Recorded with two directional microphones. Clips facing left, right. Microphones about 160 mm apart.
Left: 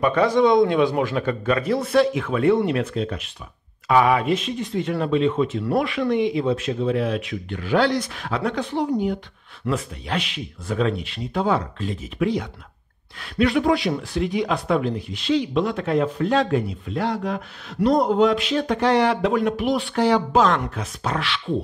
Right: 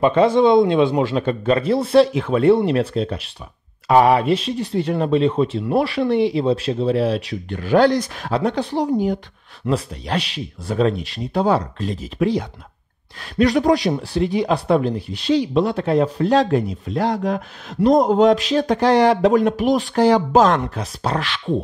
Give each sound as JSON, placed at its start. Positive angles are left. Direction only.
{"t": 0.0, "sound": "a man's voice", "side_deg": -25}